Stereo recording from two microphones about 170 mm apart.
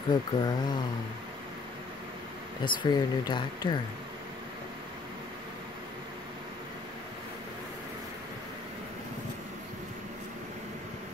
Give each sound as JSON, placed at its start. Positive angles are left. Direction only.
{"t": 0.1, "sound": "speech", "side_deg": 25}
{"t": 2.6, "sound": "speech", "side_deg": 25}